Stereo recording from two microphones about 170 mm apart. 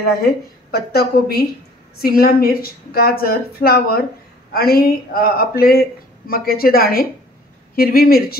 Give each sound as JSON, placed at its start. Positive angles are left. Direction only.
{"t": 0.0, "sound": "a woman's voice", "side_deg": 65}